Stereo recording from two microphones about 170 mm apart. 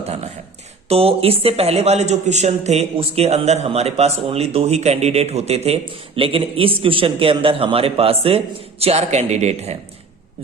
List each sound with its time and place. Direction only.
0.9 s speech: 35° right (ahead or behind)